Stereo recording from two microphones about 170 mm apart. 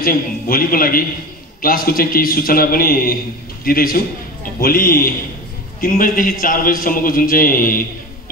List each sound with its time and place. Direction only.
0.0 s a man's voice: 60° left (ahead or behind)